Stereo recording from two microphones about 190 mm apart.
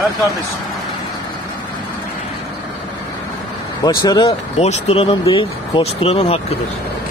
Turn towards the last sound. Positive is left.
turn(degrees=30)  # may be behind; listen again after turning